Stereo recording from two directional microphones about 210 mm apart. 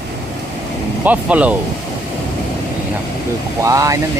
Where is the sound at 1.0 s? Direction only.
5° right (ahead or behind).